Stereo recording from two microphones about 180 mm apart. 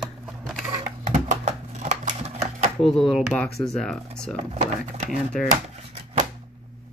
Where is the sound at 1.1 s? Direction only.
40° right (ahead or behind).